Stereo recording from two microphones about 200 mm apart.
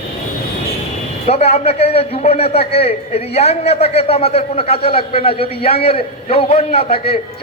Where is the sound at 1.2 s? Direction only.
30° left (ahead or behind).